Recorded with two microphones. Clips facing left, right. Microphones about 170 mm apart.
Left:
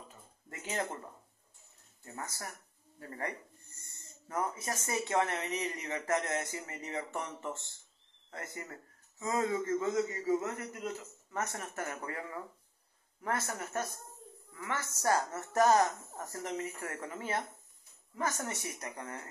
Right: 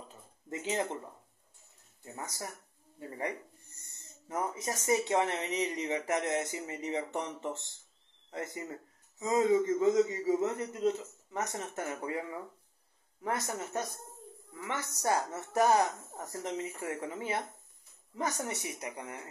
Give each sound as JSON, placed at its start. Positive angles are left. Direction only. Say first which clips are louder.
{"t": 0.5, "sound": "speech", "louder": "right 4 dB", "side_deg": -20}
{"t": 2.1, "sound": "a woman's voice", "louder": "right 2 dB", "side_deg": -15}